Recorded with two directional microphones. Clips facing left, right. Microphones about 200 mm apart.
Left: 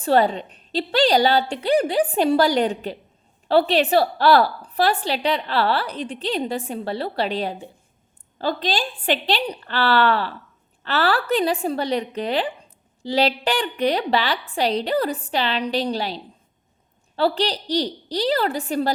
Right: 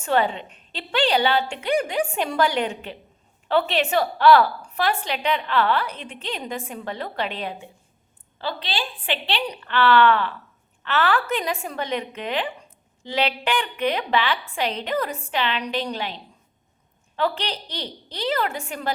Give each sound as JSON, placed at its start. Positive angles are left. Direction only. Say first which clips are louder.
{"t": 0.0, "sound": "a woman's voice", "louder": "left 4 dB", "side_deg": 35}